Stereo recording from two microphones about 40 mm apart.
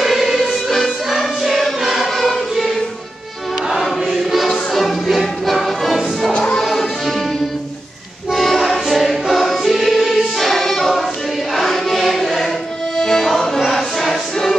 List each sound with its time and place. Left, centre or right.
0.0 s music: centre
4.2 s music: centre
8.3 s music: centre
11.5 s choir: centre
12.9 s music: centre